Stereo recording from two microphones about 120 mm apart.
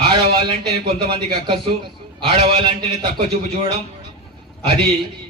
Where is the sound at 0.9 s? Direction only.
50° right (ahead or behind).